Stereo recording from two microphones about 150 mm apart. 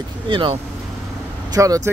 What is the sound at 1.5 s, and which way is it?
Speech, 25° right (ahead or behind).